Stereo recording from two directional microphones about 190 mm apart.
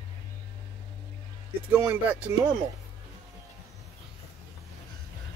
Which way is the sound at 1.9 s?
10° right (ahead or behind).